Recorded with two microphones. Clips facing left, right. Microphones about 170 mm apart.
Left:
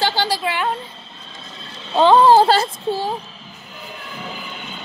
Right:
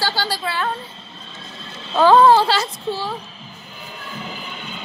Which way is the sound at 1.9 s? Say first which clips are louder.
Even; 20° left (ahead or behind).